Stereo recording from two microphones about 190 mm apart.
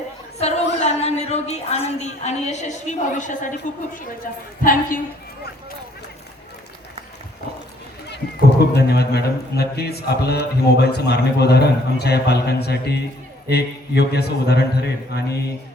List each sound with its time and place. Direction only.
0.3 s a woman's voice: 35° left (ahead or behind)
8.7 s a man's voice: 60° left (ahead or behind)